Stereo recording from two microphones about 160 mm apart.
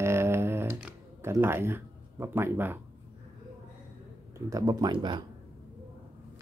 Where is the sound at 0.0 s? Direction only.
15° right (ahead or behind).